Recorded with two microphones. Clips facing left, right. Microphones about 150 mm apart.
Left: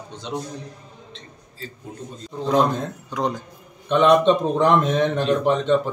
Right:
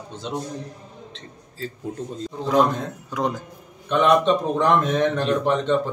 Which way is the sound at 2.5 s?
5° right (ahead or behind).